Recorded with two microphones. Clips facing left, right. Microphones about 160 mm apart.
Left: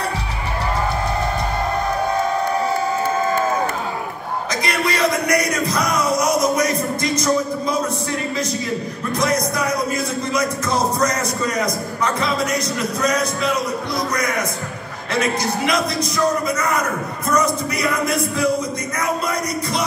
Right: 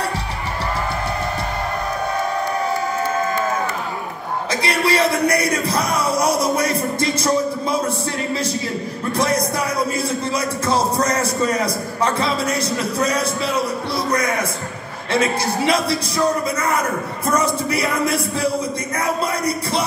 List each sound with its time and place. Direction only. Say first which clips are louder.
4.6 s a sound: right 2 dB; 30° right (ahead or behind)
9.1 s music: even; 30° right (ahead or behind)
9.9 s a sound: even; 30° right (ahead or behind)
15.1 s speech: right 1 dB; 30° right (ahead or behind)
17.3 s music: even; 30° right (ahead or behind)
18.9 s speech: right 1 dB; 30° right (ahead or behind)